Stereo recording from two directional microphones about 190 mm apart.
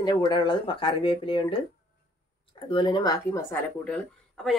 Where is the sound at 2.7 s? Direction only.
25° left (ahead or behind); by 4.5 s 5° left (ahead or behind).